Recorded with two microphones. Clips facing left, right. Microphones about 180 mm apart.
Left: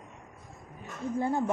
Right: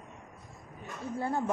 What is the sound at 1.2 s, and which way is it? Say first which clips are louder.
Speech: left 3 dB; 15° left (ahead or behind).